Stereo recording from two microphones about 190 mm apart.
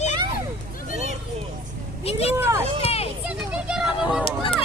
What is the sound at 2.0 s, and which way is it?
Vehicle, 30° left (ahead or behind).